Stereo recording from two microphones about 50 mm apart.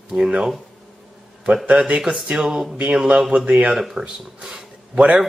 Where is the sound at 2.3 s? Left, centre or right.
Centre.